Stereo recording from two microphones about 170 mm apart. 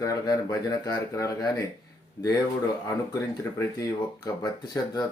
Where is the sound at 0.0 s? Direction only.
20° left (ahead or behind).